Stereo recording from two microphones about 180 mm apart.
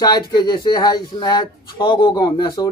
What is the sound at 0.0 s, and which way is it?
Speech, 20° left (ahead or behind).